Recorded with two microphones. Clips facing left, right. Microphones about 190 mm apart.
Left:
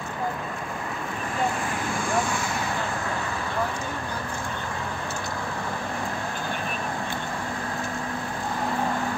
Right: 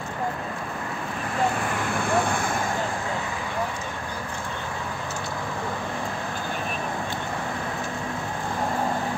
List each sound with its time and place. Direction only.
2.0 s vehicle: 60° right (ahead or behind)